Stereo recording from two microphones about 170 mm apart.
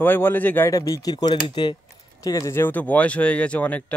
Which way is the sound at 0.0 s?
10° left (ahead or behind).